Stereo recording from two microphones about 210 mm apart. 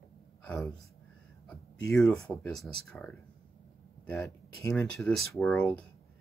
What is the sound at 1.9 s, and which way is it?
Speech, 5° left (ahead or behind).